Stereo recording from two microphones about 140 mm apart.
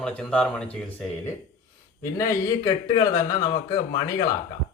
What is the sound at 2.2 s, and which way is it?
Speech, 25° left (ahead or behind).